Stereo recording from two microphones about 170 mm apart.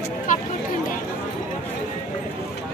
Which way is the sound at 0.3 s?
50° left (ahead or behind).